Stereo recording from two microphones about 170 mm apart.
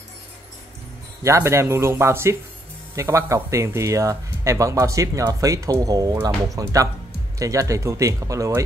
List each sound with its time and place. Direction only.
1.2 s speech: 15° right (ahead or behind)